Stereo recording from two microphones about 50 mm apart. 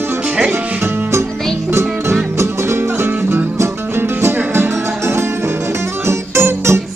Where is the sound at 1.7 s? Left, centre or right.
Right.